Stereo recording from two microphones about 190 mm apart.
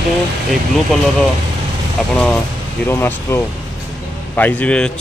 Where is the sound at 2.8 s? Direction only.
15° left (ahead or behind).